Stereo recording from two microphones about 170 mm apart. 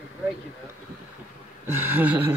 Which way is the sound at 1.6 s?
10° right (ahead or behind).